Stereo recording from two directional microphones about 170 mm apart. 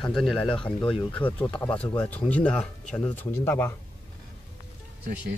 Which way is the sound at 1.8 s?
25° left (ahead or behind).